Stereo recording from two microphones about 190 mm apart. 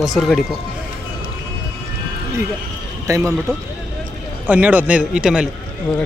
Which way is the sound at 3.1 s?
15° right (ahead or behind).